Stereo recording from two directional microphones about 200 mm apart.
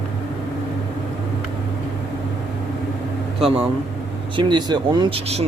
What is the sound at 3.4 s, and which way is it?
Speech, 30° right (ahead or behind).